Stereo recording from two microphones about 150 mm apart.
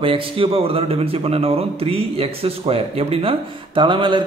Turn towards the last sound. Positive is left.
turn(degrees=-35)  # may be behind; listen again after turning